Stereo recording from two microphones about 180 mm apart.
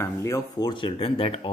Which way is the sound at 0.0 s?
15° left (ahead or behind).